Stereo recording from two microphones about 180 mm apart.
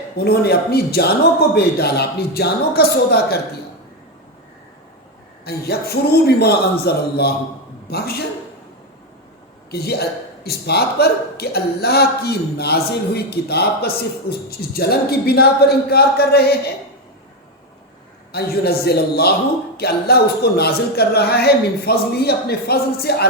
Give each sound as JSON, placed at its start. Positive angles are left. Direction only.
{"t": 0.3, "sound": "speech", "side_deg": 60}
{"t": 5.5, "sound": "speech", "side_deg": 60}
{"t": 9.7, "sound": "speech", "side_deg": 60}
{"t": 18.3, "sound": "speech", "side_deg": 60}